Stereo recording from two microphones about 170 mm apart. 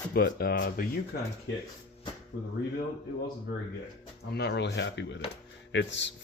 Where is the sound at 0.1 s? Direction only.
65° left (ahead or behind).